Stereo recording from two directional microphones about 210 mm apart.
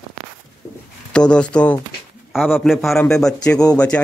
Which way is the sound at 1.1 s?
5° left (ahead or behind).